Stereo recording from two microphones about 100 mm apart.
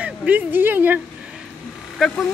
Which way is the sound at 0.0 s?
15° right (ahead or behind).